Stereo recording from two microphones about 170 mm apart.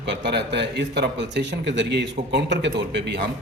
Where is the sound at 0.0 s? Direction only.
90° right.